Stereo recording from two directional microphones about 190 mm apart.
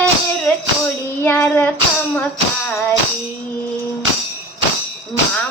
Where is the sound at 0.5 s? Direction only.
10° left (ahead or behind).